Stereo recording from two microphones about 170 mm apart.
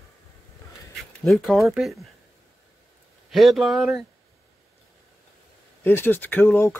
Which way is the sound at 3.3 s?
Centre (ahead or behind).